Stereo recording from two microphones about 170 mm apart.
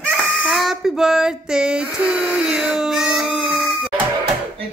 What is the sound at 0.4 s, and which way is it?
Child singing, centre (ahead or behind).